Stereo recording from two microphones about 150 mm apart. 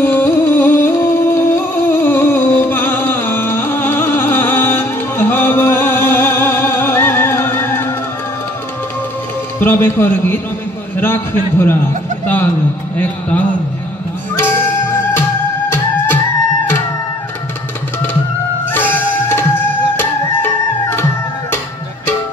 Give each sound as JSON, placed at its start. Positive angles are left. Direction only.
{"t": 0.0, "sound": "music", "side_deg": 15}
{"t": 9.6, "sound": "a man's voice", "side_deg": 15}
{"t": 12.9, "sound": "a man's voice", "side_deg": 10}
{"t": 14.3, "sound": "music", "side_deg": 15}
{"t": 18.7, "sound": "music", "side_deg": 15}